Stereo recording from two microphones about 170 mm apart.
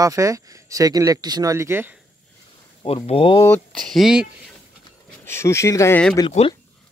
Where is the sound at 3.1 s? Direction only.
30° left (ahead or behind).